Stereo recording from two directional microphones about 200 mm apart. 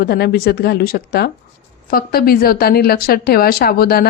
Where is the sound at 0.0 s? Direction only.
50° left (ahead or behind).